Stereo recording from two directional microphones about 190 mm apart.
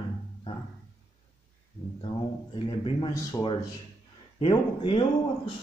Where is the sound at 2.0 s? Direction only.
25° left (ahead or behind).